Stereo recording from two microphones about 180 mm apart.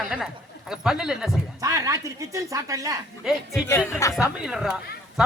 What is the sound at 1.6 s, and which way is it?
Speech, 20° right (ahead or behind).